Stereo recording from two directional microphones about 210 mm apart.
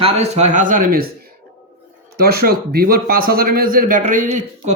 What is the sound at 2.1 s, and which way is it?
A man's voice, 45° right (ahead or behind).